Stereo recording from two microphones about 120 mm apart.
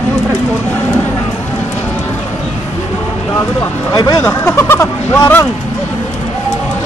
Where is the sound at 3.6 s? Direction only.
30° left (ahead or behind).